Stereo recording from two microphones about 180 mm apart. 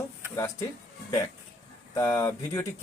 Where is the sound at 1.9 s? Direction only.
15° left (ahead or behind).